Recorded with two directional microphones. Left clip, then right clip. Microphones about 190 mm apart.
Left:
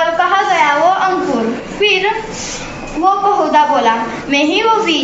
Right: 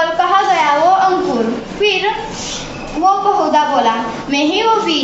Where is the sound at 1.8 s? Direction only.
10° left (ahead or behind).